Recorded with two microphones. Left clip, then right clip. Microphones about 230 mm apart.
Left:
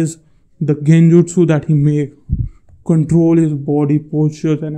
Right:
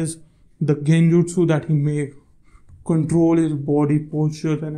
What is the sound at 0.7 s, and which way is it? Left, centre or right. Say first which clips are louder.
Speech: left 6 dB; left.